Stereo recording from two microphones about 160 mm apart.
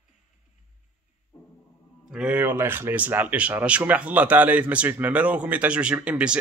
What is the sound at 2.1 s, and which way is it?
Speech, 5° right (ahead or behind).